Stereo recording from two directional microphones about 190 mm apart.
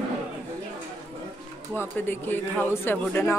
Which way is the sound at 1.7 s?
10° left (ahead or behind).